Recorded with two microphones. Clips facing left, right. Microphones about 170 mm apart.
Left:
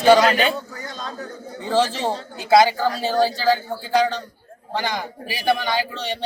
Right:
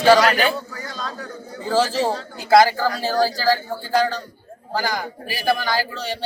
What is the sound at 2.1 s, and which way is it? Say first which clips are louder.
Speech: right 1 dB; 25° left (ahead or behind).